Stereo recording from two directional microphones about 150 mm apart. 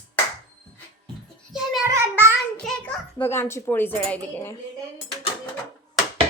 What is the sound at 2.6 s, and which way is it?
Speech, 5° left (ahead or behind).